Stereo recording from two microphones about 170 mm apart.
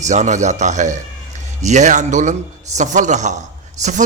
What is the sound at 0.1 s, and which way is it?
A man's voice, 45° right (ahead or behind).